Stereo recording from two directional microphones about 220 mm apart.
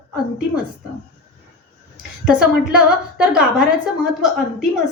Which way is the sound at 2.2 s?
5° right (ahead or behind).